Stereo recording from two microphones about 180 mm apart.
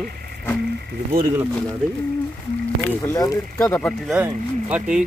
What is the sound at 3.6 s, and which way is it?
Speech, 5° left (ahead or behind).